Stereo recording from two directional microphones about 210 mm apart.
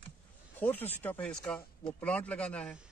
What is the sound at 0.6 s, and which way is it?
Speech, 10° left (ahead or behind).